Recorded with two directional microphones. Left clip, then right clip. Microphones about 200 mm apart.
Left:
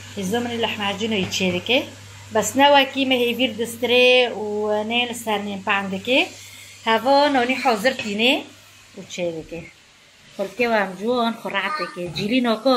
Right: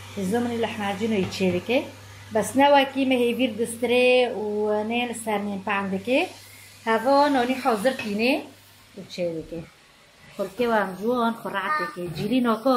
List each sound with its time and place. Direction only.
0.3 s a woman's voice: 5° left (ahead or behind)
10.3 s speech: 5° left (ahead or behind)